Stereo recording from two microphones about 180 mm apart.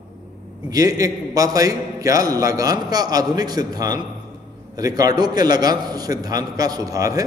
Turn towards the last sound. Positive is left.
turn(degrees=-20)  # may be behind; listen again after turning